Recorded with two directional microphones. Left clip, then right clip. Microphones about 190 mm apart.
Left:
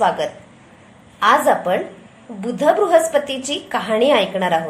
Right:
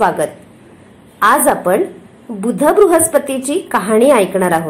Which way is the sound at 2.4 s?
25° right (ahead or behind).